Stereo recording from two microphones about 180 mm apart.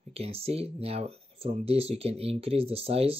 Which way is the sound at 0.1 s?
35° right (ahead or behind).